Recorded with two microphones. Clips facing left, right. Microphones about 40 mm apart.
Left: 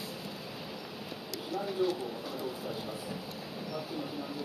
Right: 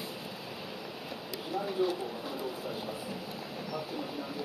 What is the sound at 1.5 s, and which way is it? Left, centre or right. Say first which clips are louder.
Bird: right 1 dB; centre.